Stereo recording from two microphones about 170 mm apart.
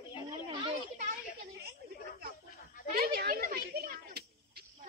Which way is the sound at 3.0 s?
60° right (ahead or behind).